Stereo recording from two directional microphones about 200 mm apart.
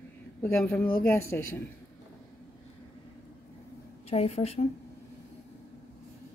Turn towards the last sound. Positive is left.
turn(degrees=30)  # may be behind; listen again after turning